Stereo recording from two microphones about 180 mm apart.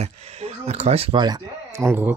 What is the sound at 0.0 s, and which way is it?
Speech, 35° right (ahead or behind).